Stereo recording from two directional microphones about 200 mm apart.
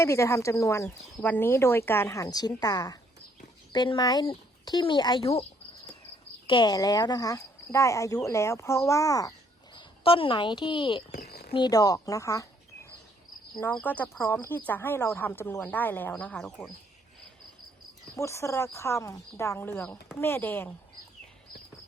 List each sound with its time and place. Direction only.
0.0 s speech: 15° left (ahead or behind)
6.5 s speech: 20° left (ahead or behind)
11.3 s a sound: 50° left (ahead or behind)
11.5 s speech: 20° left (ahead or behind); by 16.6 s 5° left (ahead or behind)
18.2 s speech: 15° left (ahead or behind)